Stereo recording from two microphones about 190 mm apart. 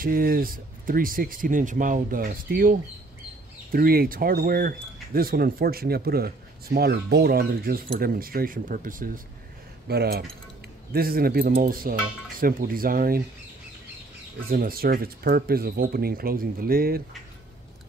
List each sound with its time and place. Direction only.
0.0 s speech: 50° right (ahead or behind)
9.8 s speech: 55° right (ahead or behind)
14.5 s speech: 50° right (ahead or behind)